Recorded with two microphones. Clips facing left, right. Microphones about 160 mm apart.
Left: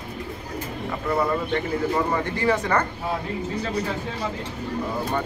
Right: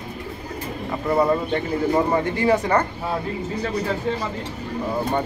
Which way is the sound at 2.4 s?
20° right (ahead or behind).